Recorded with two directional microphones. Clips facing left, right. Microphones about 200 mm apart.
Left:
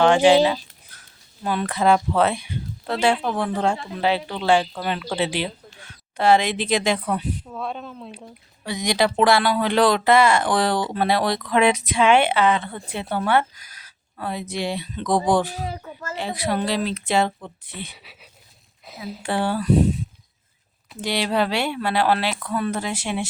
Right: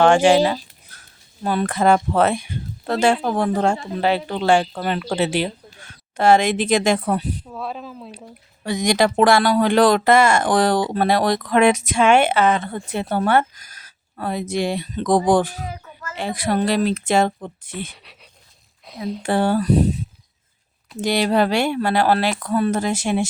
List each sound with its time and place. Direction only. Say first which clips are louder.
0.0 s speech: right 1 dB; 50° right (ahead or behind)
7.4 s speech: even; centre (ahead or behind)
8.6 s speech: right 3 dB; 45° right (ahead or behind)
15.6 s speech: left 2 dB; 35° left (ahead or behind)
16.1 s speech: right 3 dB; 50° right (ahead or behind)
17.9 s speech: even; 5° left (ahead or behind)
19.2 s speech: right 4 dB; 45° right (ahead or behind)
21.0 s speech: right 4 dB; 45° right (ahead or behind)